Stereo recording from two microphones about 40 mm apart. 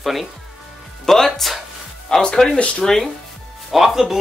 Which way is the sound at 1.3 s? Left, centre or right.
Centre.